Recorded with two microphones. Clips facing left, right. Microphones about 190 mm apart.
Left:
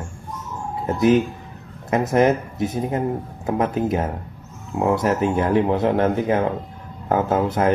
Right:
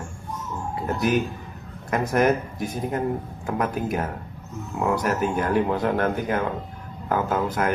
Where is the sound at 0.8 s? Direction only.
25° left (ahead or behind).